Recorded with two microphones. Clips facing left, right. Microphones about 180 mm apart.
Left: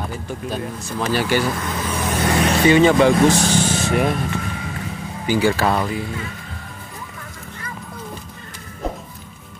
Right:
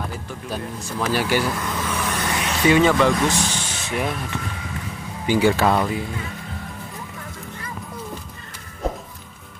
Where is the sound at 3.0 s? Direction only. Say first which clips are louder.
Left 5 dB; 35° left (ahead or behind).